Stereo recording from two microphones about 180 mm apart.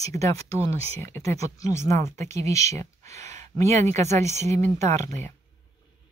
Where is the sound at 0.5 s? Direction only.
35° right (ahead or behind).